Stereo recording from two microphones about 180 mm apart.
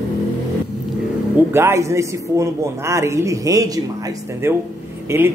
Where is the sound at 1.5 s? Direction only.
15° right (ahead or behind).